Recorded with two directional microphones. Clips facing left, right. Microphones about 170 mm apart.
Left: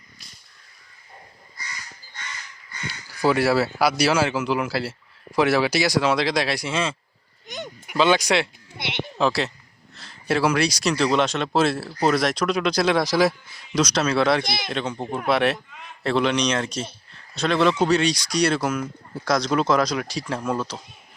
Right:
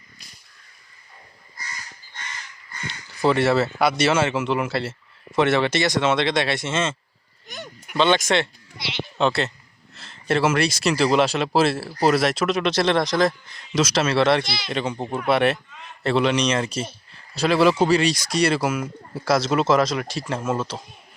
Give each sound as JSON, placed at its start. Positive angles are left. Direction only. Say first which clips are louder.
{"t": 3.2, "sound": "a man's voice", "louder": "right 1 dB", "side_deg": 0}
{"t": 7.4, "sound": "a sound", "louder": "left 3 dB", "side_deg": 20}
{"t": 7.9, "sound": "a man's voice", "louder": "even", "side_deg": 5}
{"t": 8.8, "sound": "sheep", "louder": "left 1 dB", "side_deg": 60}
{"t": 9.1, "sound": "a man's voice", "louder": "right 1 dB", "side_deg": 0}
{"t": 14.4, "sound": "speech", "louder": "left 3 dB", "side_deg": 50}
{"t": 14.7, "sound": "a man's voice", "louder": "right 1 dB", "side_deg": 0}